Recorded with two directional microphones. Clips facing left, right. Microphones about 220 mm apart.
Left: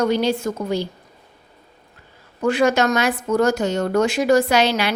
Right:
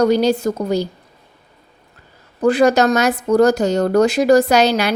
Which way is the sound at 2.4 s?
35° right (ahead or behind).